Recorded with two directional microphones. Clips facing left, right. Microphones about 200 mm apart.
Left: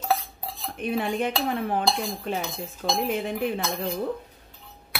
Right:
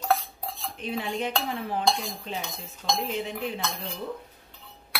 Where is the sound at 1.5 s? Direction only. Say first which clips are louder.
Left 4 dB; 55° left (ahead or behind).